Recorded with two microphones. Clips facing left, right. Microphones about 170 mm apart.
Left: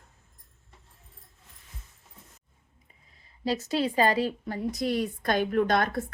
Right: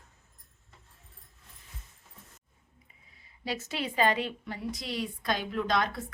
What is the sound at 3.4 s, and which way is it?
A woman's voice, 35° left (ahead or behind).